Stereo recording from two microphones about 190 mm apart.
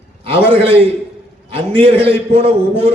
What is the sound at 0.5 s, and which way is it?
A man's voice, 30° right (ahead or behind).